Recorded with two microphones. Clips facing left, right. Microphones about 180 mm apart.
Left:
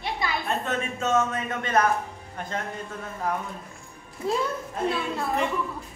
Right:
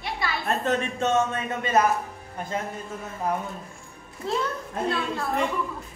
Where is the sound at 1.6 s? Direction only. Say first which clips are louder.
Right 1 dB; 5° right (ahead or behind).